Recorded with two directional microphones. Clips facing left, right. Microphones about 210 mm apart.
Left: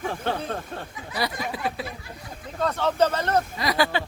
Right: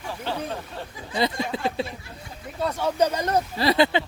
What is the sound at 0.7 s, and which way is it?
Speech, 50° left (ahead or behind).